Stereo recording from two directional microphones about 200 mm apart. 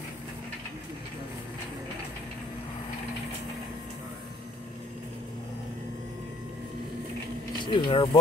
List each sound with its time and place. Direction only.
7.6 s speech: 25° left (ahead or behind)